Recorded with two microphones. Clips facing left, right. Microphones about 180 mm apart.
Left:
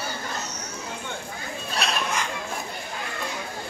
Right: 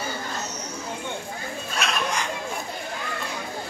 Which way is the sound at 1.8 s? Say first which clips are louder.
Even; 35° left (ahead or behind).